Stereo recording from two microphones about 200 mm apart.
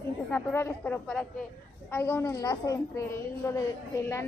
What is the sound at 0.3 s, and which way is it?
A woman's voice, 10° left (ahead or behind).